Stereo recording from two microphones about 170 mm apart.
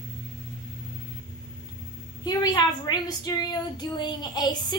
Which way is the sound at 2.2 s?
25° left (ahead or behind).